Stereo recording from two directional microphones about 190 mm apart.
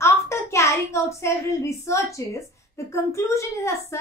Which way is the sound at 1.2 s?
15° left (ahead or behind).